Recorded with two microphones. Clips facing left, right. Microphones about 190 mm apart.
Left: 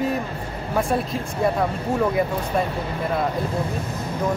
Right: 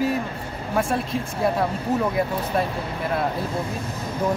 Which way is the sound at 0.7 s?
Centre (ahead or behind).